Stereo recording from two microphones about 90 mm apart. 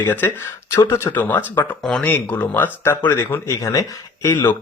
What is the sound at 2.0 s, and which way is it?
Speech, 20° left (ahead or behind).